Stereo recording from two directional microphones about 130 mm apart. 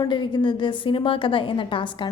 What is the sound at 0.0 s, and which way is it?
A woman's voice, 35° left (ahead or behind).